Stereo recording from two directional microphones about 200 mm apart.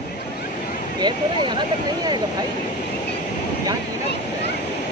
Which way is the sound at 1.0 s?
25° right (ahead or behind).